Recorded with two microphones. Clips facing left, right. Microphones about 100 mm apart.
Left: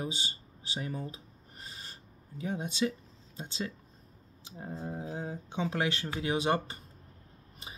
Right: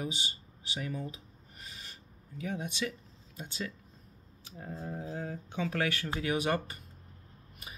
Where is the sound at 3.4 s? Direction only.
30° left (ahead or behind).